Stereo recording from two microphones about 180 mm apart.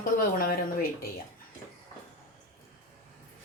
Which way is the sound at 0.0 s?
55° left (ahead or behind).